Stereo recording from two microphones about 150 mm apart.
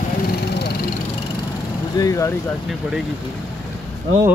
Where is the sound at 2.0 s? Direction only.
20° left (ahead or behind).